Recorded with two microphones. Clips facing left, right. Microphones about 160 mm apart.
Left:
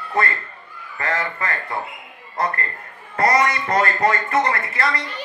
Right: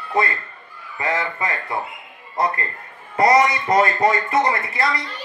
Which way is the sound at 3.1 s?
15° right (ahead or behind).